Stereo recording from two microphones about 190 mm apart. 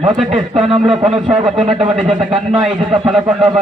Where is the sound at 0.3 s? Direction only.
30° right (ahead or behind).